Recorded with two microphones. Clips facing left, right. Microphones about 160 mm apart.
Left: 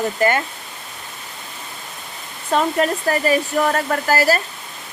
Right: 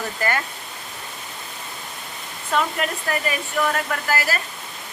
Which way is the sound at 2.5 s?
35° left (ahead or behind).